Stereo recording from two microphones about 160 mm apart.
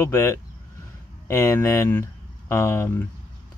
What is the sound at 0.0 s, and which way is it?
Speech, 15° left (ahead or behind).